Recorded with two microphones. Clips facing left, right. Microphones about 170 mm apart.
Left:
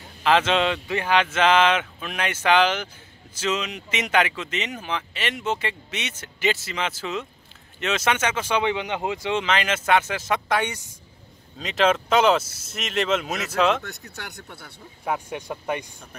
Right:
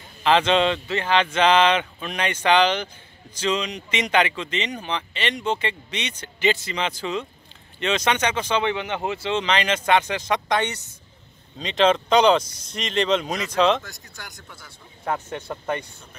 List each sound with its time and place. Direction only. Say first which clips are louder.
0.2 s speech: right 2 dB; 5° left (ahead or behind)
13.8 s speech: left 4 dB; 65° left (ahead or behind)
15.0 s speech: even; 10° left (ahead or behind)